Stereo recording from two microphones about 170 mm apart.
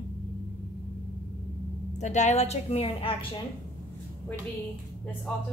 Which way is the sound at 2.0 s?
45° left (ahead or behind).